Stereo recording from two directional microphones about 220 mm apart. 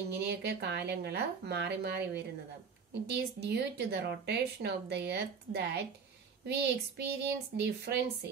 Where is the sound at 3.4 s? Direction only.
50° right (ahead or behind).